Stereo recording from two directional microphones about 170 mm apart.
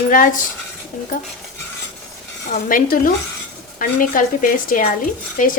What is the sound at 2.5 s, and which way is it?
A woman's voice, 55° left (ahead or behind).